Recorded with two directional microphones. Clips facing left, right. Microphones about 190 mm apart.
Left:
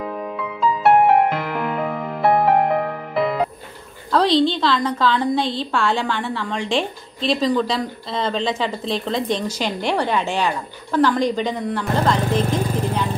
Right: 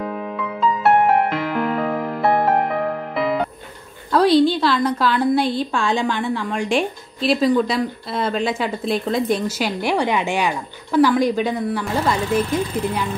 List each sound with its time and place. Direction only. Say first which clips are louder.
0.8 s music: left 2 dB; centre (ahead or behind)
4.1 s a woman's voice: right 2 dB; 10° right (ahead or behind)
12.2 s speech: right 1 dB; 40° left (ahead or behind)